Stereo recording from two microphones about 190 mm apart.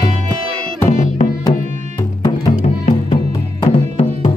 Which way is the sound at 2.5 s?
40° left (ahead or behind).